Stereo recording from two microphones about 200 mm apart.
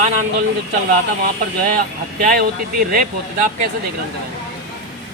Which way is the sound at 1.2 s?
45° right (ahead or behind).